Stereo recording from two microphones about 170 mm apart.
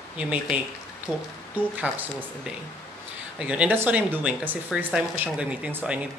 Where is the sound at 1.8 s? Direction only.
10° right (ahead or behind).